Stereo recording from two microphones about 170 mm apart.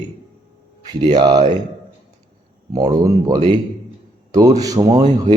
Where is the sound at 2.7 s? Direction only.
20° right (ahead or behind).